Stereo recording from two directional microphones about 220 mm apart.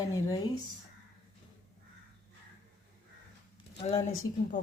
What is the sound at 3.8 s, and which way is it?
Speech, 25° left (ahead or behind).